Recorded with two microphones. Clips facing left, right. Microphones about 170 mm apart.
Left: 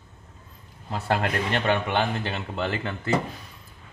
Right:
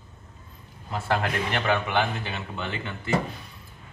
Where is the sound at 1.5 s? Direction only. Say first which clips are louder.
Left 1 dB; 30° left (ahead or behind).